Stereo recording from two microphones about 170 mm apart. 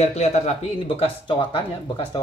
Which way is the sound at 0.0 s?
40° left (ahead or behind).